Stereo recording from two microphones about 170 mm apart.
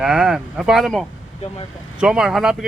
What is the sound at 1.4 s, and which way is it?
Speech, 35° left (ahead or behind).